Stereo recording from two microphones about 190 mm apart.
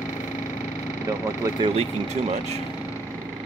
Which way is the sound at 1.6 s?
25° right (ahead or behind).